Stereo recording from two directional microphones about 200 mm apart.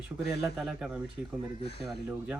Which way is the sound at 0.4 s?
5° right (ahead or behind).